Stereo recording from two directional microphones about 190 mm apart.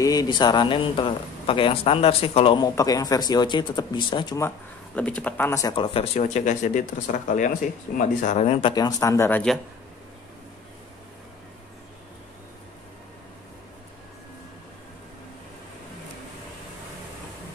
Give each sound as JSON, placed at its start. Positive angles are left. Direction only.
{"t": 0.0, "sound": "speech", "side_deg": 20}
{"t": 8.7, "sound": "speech", "side_deg": 20}